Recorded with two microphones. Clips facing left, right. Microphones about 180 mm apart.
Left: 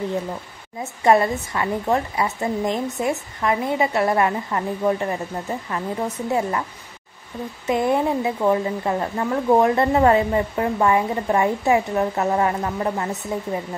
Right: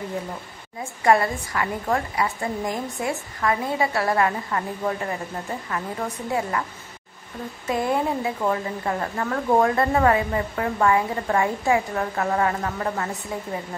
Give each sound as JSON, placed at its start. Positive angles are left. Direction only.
{"t": 1.0, "sound": "a woman's voice", "side_deg": 20}
{"t": 7.6, "sound": "a woman's voice", "side_deg": 20}